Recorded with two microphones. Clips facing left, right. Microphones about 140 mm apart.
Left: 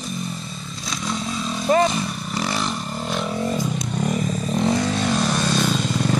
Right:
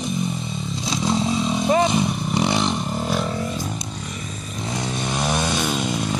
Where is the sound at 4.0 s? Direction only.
45° left (ahead or behind).